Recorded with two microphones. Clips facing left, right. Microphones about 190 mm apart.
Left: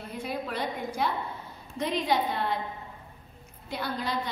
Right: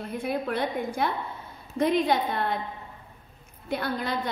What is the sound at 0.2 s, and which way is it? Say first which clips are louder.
A woman's voice: right 4 dB; 55° right (ahead or behind).